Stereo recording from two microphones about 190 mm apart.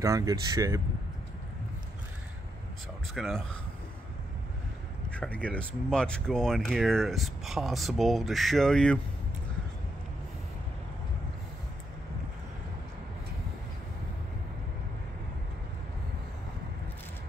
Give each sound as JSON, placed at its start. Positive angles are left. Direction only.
{"t": 0.0, "sound": "speech", "side_deg": -15}
{"t": 3.2, "sound": "speech", "side_deg": 0}
{"t": 5.1, "sound": "speech", "side_deg": 5}